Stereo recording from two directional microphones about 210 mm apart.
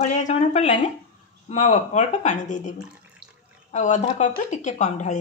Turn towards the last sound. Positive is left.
turn(degrees=35)  # may be behind; listen again after turning